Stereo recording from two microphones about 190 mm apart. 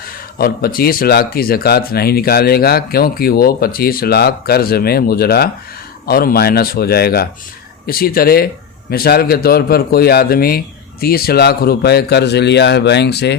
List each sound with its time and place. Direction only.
0.0 s a man's voice: 50° left (ahead or behind)